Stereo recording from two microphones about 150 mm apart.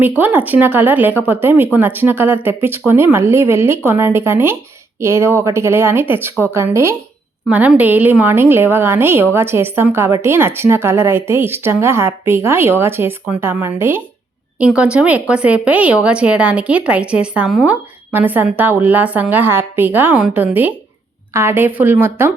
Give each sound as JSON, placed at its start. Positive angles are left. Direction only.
{"t": 0.2, "sound": "a woman's voice", "side_deg": -10}